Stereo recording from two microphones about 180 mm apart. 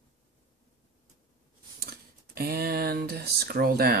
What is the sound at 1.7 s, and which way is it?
Speech, 55° right (ahead or behind).